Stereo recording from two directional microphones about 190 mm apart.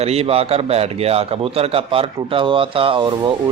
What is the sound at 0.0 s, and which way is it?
A man's voice, 35° right (ahead or behind).